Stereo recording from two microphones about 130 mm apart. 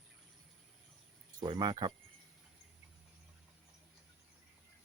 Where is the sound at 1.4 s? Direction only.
35° right (ahead or behind).